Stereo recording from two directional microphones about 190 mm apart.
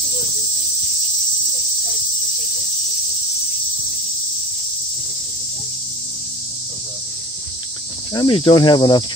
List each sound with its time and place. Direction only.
8.1 s cricket: 25° left (ahead or behind)